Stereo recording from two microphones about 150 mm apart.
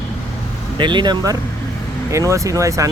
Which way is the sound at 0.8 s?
30° right (ahead or behind).